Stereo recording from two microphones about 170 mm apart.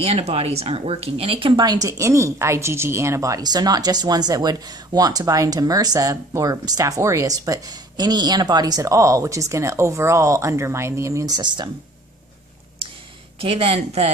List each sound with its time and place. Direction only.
0.0 s speech: 35° right (ahead or behind)
13.4 s speech: 35° right (ahead or behind)